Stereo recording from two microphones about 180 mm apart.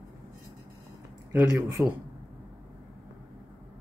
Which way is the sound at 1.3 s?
15° right (ahead or behind).